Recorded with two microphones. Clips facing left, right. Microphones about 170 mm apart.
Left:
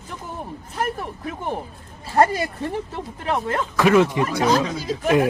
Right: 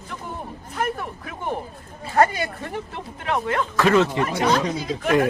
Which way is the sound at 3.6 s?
10° left (ahead or behind).